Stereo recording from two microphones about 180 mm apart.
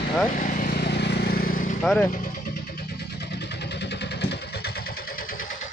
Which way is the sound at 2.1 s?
50° left (ahead or behind).